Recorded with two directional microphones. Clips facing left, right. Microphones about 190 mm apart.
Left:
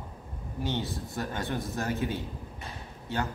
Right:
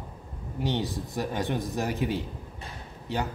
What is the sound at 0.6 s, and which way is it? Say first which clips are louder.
Speech: right 3 dB; 15° right (ahead or behind).